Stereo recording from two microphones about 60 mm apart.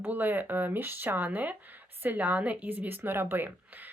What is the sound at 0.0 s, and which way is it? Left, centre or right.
Speech, right.